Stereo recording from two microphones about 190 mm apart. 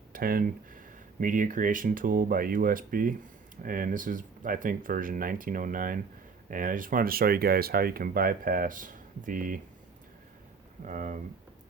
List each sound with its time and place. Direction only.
0.1 s speech: 50° right (ahead or behind)
10.8 s speech: 40° right (ahead or behind)